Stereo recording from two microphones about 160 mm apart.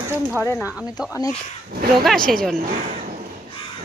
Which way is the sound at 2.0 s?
5° left (ahead or behind).